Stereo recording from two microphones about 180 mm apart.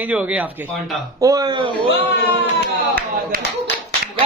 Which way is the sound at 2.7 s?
55° right (ahead or behind).